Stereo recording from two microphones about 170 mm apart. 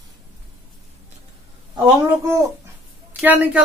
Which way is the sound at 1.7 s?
25° right (ahead or behind).